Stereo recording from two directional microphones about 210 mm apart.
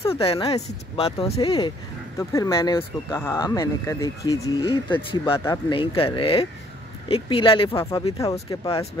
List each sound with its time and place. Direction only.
0.0 s speech: 25° left (ahead or behind)
2.1 s speech: 15° left (ahead or behind)